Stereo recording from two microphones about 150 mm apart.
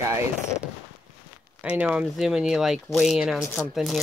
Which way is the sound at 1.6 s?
10° right (ahead or behind).